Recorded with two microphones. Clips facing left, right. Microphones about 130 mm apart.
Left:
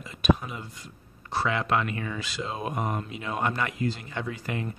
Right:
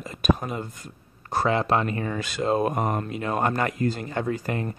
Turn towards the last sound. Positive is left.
turn(degrees=-45)  # may be behind; listen again after turning